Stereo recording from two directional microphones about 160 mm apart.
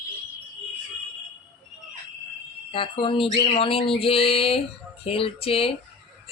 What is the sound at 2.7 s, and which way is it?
Speech, 35° left (ahead or behind).